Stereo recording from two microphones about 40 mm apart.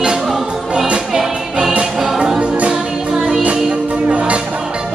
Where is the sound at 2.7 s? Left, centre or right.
Centre.